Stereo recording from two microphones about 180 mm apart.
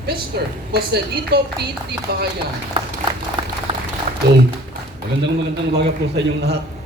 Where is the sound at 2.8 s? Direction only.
30° right (ahead or behind).